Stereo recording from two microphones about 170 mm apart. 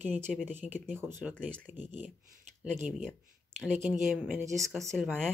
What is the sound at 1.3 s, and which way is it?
Speech, 5° left (ahead or behind).